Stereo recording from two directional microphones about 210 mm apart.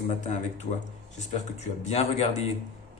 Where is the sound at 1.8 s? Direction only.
30° left (ahead or behind).